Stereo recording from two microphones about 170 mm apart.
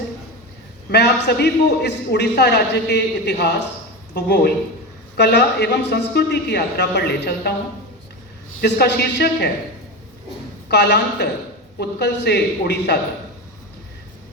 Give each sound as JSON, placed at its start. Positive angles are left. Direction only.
{"t": 0.9, "sound": "a man's voice", "side_deg": 75}
{"t": 8.6, "sound": "a man's voice", "side_deg": 80}
{"t": 10.7, "sound": "a man's voice", "side_deg": 85}